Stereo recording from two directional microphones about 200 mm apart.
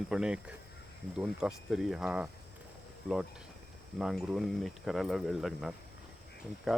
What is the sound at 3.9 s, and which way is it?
Speech, centre (ahead or behind).